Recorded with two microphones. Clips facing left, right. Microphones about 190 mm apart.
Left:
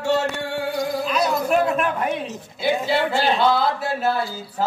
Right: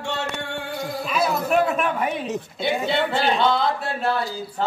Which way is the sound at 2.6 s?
5° left (ahead or behind).